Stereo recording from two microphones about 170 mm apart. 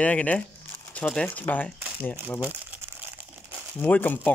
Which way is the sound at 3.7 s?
10° left (ahead or behind).